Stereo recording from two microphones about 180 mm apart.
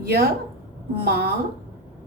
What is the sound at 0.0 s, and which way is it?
A woman's voice, 60° right (ahead or behind).